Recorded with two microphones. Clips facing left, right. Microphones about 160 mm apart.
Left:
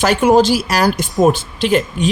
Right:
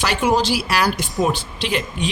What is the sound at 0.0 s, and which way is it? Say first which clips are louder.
Speech: left 7 dB; 50° left (ahead or behind).